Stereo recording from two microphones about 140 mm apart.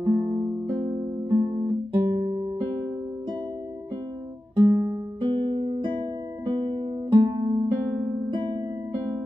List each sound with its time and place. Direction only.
0.0 s music: 25° right (ahead or behind)
1.3 s guitar: 25° right (ahead or behind)
4.6 s music: 30° right (ahead or behind)